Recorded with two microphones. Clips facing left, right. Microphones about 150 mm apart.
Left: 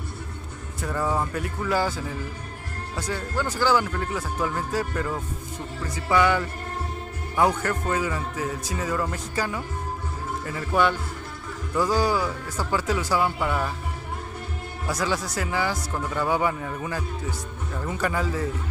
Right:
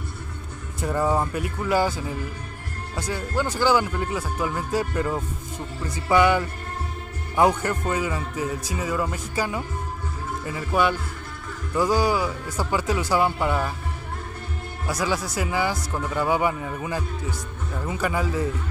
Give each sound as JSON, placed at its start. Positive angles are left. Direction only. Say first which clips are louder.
{"t": 0.7, "sound": "a man's voice", "louder": "right 3 dB", "side_deg": -20}
{"t": 3.0, "sound": "a man's voice", "louder": "right 2 dB", "side_deg": -10}
{"t": 14.9, "sound": "a man's voice", "louder": "right 1 dB", "side_deg": -10}